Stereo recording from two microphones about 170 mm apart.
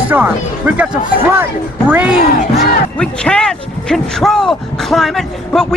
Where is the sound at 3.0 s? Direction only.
5° left (ahead or behind).